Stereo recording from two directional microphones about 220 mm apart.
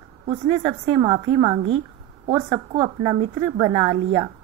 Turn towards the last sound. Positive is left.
turn(degrees=-25)  # may be behind; listen again after turning